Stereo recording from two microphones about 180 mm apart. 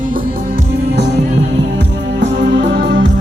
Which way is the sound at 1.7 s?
80° right.